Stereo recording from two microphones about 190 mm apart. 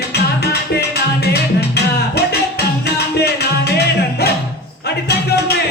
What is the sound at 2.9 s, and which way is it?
Music, 60° left (ahead or behind).